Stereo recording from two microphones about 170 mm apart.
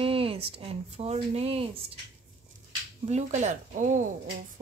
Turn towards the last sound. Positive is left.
turn(degrees=-45)  # may be behind; listen again after turning